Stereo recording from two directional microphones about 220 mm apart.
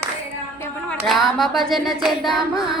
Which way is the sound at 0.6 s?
5° left (ahead or behind).